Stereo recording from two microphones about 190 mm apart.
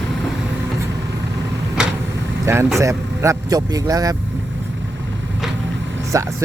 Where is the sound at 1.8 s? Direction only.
5° right (ahead or behind).